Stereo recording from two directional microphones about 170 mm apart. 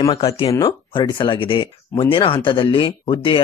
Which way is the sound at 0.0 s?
25° left (ahead or behind).